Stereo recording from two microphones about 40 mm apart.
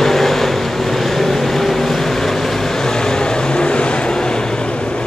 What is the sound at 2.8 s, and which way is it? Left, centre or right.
Vehicle, centre.